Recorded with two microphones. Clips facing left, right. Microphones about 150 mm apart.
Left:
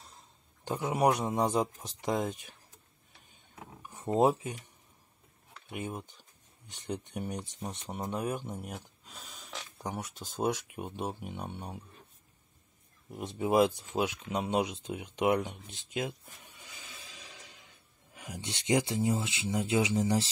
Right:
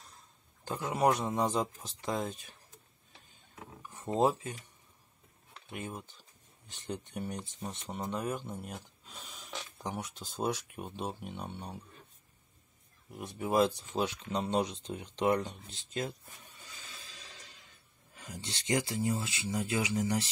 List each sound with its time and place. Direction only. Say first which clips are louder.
0.7 s speech: left 1 dB; 20° left (ahead or behind)
3.8 s a sound: left 4 dB; 15° left (ahead or behind)
4.2 s speech: left 2 dB; 20° left (ahead or behind)
5.7 s speech: left 3 dB; 10° left (ahead or behind)
13.2 s speech: left 3 dB; 20° left (ahead or behind)
16.6 s music: left 2 dB; 15° left (ahead or behind)
18.1 s speech: left 3 dB; 15° left (ahead or behind)